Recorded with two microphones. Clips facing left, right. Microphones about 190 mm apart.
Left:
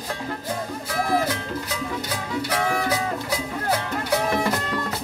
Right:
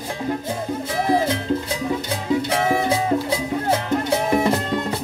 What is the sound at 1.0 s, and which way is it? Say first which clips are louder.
Music: right 5 dB; 20° right (ahead or behind).